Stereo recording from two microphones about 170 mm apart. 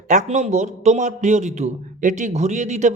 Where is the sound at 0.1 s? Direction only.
45° right (ahead or behind).